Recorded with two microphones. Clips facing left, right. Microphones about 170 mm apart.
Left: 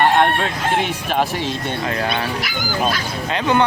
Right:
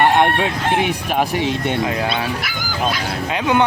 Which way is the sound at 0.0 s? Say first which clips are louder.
Right 1 dB; 10° right (ahead or behind).